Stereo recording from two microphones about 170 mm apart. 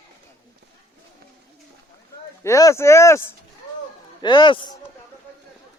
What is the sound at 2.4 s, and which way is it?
Speech, 15° left (ahead or behind).